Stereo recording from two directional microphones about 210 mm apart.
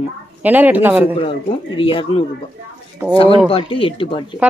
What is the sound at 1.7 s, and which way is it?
Speech, 25° left (ahead or behind).